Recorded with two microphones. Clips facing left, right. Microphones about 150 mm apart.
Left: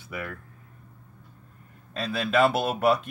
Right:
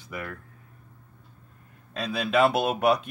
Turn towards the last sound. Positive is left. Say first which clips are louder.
# even
turn(degrees=0)  # may be behind; listen again after turning